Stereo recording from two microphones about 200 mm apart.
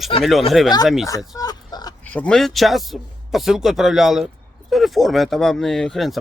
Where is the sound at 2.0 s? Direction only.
5° left (ahead or behind).